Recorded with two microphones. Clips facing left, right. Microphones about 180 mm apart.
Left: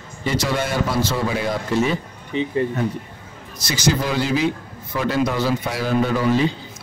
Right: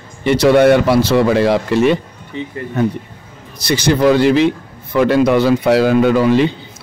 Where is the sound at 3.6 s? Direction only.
60° right (ahead or behind).